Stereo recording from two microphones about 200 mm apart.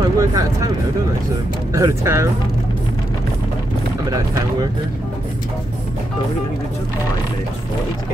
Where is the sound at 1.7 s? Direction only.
15° right (ahead or behind).